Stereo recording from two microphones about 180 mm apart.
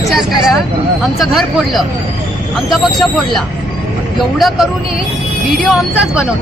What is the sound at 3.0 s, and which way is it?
Speech, centre (ahead or behind).